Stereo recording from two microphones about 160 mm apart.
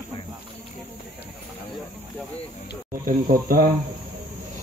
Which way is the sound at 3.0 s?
60° right (ahead or behind).